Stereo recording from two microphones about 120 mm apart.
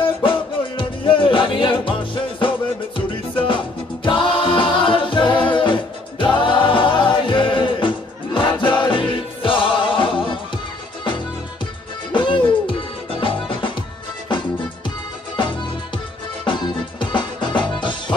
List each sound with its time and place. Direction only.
0.0 s music: 45° left (ahead or behind)
12.1 s music: 40° left (ahead or behind)
16.4 s music: 40° left (ahead or behind)